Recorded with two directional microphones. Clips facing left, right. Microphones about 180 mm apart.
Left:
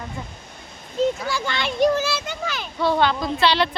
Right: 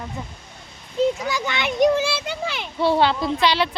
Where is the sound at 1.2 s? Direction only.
20° right (ahead or behind).